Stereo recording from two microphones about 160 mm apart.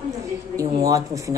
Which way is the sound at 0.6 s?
20° right (ahead or behind).